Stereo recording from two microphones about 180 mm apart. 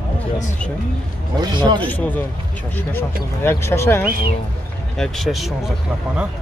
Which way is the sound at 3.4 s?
15° left (ahead or behind).